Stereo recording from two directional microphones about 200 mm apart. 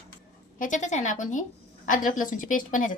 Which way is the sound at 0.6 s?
40° left (ahead or behind).